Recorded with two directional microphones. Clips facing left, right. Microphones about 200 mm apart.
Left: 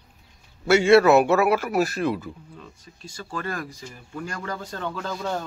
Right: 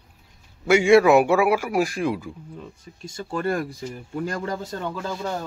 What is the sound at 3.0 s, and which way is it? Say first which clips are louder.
Speech: right 6 dB; 25° right (ahead or behind).